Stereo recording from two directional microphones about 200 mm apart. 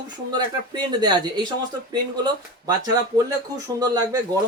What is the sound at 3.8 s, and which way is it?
Speech, 20° right (ahead or behind).